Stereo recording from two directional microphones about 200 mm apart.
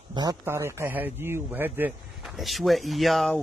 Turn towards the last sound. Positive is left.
turn(degrees=0)  # may be behind; listen again after turning